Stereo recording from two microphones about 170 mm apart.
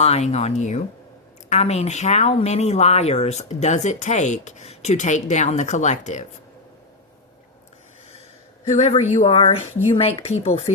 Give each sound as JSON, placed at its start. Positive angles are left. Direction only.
{"t": 0.0, "sound": "speech", "side_deg": 40}
{"t": 8.6, "sound": "speech", "side_deg": 40}